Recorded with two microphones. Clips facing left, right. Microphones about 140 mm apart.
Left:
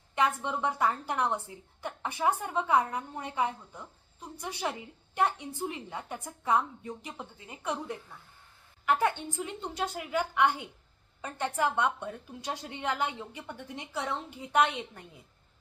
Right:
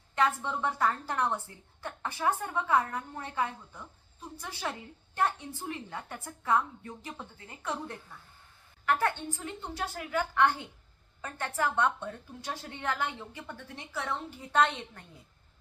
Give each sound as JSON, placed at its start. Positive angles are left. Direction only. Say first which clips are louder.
{"t": 0.2, "sound": "a woman's voice", "louder": "even", "side_deg": 15}